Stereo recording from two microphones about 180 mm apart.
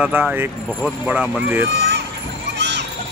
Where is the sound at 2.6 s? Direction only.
75° right (ahead or behind).